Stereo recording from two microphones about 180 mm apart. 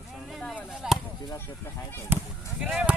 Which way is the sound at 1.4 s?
15° left (ahead or behind).